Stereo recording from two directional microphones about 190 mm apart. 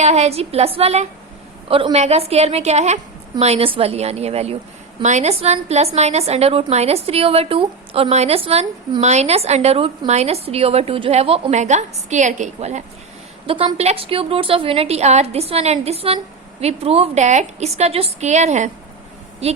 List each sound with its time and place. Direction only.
0.0 s a woman's voice: 35° right (ahead or behind)